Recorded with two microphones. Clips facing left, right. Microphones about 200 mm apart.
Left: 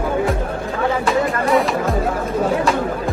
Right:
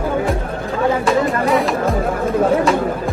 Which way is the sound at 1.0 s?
Centre (ahead or behind).